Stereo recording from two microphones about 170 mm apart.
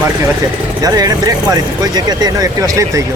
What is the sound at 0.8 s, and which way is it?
Speech, 20° right (ahead or behind).